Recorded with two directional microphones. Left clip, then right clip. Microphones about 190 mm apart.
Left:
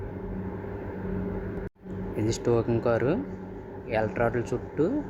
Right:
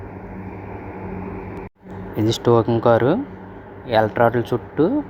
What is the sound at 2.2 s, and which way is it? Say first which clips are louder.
Speech: right 9 dB; 15° right (ahead or behind).